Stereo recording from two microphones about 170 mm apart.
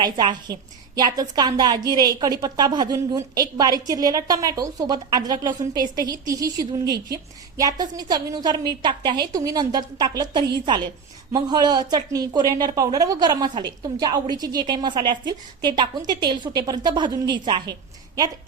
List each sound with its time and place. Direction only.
0.0 s a woman's voice: 25° right (ahead or behind)